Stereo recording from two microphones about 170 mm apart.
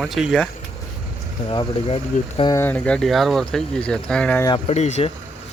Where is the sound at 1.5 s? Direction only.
35° left (ahead or behind).